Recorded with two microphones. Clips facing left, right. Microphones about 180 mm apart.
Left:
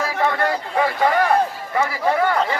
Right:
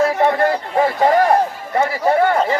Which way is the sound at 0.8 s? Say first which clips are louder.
Right 4 dB; 40° right (ahead or behind).